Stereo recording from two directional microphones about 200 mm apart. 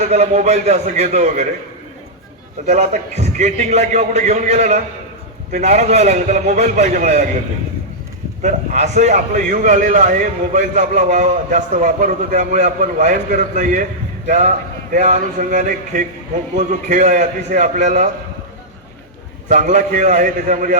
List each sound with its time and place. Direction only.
0.0 s a man's voice: 35° right (ahead or behind)
2.6 s a man's voice: 35° right (ahead or behind)
8.4 s a man's voice: 35° right (ahead or behind)
19.5 s a man's voice: 40° right (ahead or behind)